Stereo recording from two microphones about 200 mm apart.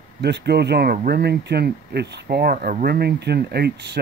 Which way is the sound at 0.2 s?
55° right (ahead or behind).